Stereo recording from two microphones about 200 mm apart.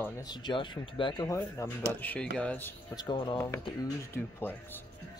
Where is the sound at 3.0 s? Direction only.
20° left (ahead or behind).